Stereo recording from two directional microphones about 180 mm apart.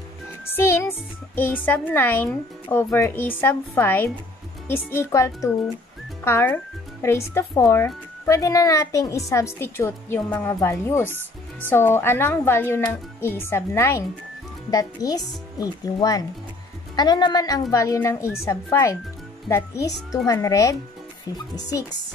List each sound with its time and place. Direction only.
0.5 s a woman's voice: 15° left (ahead or behind)